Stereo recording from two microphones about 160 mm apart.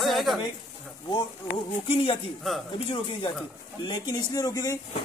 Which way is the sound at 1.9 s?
35° left (ahead or behind).